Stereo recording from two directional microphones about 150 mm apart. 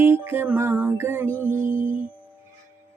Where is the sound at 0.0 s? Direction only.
15° right (ahead or behind).